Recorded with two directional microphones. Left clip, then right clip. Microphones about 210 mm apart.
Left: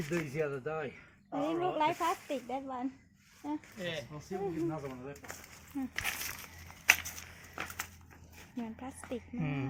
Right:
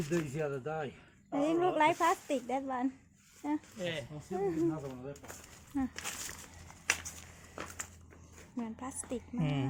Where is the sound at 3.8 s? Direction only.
50° right (ahead or behind).